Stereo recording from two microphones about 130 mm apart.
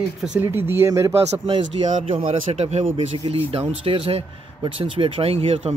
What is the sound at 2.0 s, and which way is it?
Speech, 65° right (ahead or behind).